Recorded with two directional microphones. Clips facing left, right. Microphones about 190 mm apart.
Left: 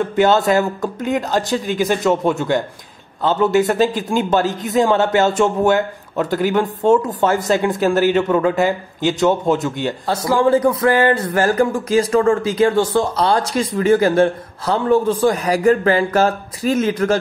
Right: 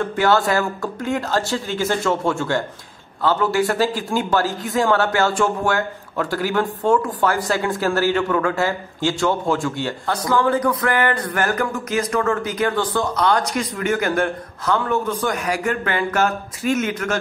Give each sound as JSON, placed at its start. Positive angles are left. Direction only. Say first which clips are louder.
{"t": 0.1, "sound": "a man's voice", "louder": "left 4 dB", "side_deg": 20}